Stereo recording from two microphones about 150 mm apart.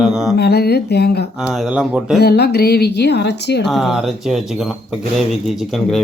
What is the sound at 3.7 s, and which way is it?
Speech, centre (ahead or behind).